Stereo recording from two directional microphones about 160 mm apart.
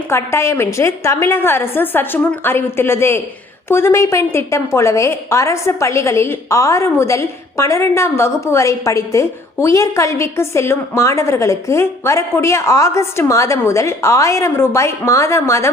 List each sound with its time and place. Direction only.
0.1 s a woman's voice: 15° left (ahead or behind)